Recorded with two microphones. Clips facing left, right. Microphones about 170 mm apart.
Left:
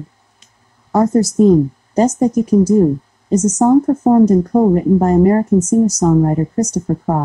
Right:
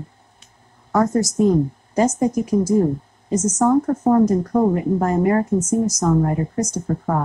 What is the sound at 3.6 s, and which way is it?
Speech, 25° left (ahead or behind).